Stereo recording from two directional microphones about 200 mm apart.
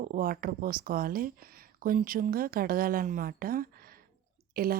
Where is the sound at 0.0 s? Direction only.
45° right (ahead or behind).